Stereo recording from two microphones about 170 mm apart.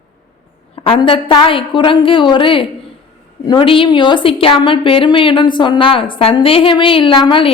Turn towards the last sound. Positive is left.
turn(degrees=30)  # may be behind; listen again after turning